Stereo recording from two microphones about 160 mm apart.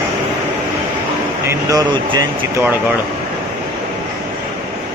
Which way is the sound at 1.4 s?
25° right (ahead or behind).